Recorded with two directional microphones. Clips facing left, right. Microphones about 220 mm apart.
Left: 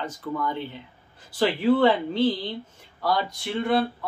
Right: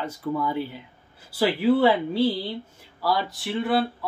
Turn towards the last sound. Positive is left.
turn(degrees=-5)  # may be behind; listen again after turning